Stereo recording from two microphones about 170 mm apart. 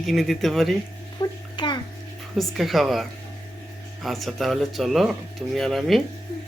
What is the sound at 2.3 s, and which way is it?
Speech, centre (ahead or behind).